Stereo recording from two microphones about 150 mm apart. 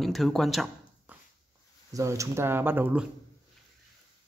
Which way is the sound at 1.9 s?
20° right (ahead or behind).